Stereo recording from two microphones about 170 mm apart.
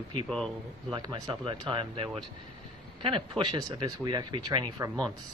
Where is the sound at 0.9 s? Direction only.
25° right (ahead or behind).